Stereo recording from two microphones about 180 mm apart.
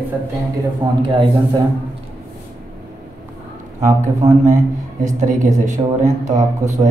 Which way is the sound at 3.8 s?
45° right (ahead or behind).